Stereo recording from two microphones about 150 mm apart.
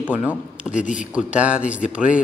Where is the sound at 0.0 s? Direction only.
10° right (ahead or behind).